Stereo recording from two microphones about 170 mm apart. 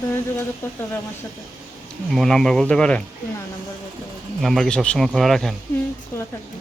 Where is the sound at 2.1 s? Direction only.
Centre (ahead or behind).